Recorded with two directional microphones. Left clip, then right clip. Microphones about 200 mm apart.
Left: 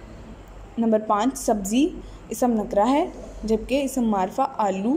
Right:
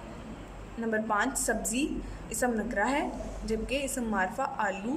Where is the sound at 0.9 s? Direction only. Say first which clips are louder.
Left 7 dB; 15° left (ahead or behind).